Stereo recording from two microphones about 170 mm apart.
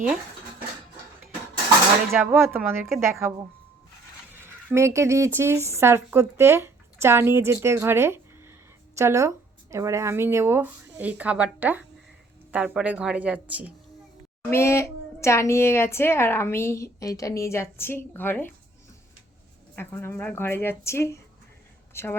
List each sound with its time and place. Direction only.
2.1 s speech: 15° right (ahead or behind)
4.4 s speech: 15° right (ahead or behind)
14.5 s a child's voice: 15° left (ahead or behind)
19.7 s a child's voice: 10° left (ahead or behind)